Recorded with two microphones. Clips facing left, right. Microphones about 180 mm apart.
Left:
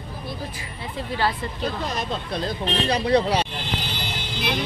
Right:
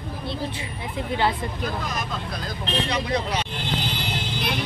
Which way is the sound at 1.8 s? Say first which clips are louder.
Left 2 dB; 30° left (ahead or behind).